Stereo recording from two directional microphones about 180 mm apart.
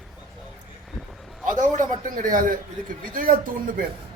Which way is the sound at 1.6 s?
45° right (ahead or behind).